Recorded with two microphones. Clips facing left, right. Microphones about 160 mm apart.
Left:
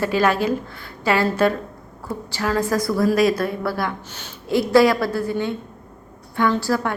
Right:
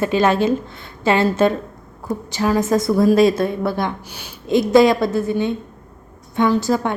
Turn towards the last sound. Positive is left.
turn(degrees=-20)  # may be behind; listen again after turning